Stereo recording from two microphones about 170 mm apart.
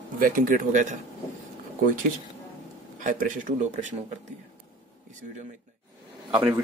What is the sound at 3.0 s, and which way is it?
Speech, 50° right (ahead or behind).